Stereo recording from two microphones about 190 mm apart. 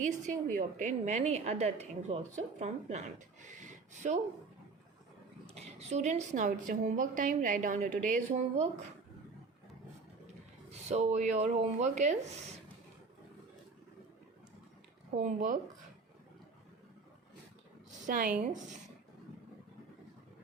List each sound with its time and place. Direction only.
0.0 s a woman's voice: 40° right (ahead or behind)
3.4 s a sound: 40° right (ahead or behind)
5.5 s a woman's voice: 35° right (ahead or behind)
10.7 s a woman's voice: 35° right (ahead or behind)
15.2 s a woman's voice: 40° right (ahead or behind)
18.0 s a woman's voice: 45° right (ahead or behind)